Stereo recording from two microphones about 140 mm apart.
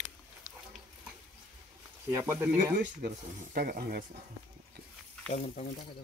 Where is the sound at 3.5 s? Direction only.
90° right.